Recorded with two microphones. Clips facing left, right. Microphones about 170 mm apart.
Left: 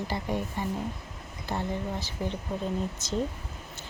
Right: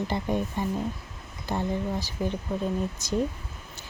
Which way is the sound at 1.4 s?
15° right (ahead or behind).